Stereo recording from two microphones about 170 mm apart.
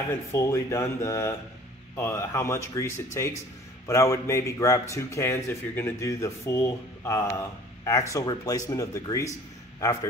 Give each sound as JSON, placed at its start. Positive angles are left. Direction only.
{"t": 0.1, "sound": "speech", "side_deg": 15}